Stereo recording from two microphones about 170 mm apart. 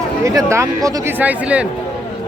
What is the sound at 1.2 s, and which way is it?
Speech, 10° right (ahead or behind).